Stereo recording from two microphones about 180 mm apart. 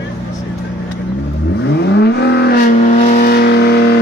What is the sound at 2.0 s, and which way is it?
Vehicle, 65° left (ahead or behind).